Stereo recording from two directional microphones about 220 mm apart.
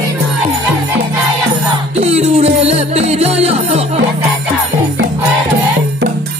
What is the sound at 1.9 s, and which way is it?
Music, 30° right (ahead or behind).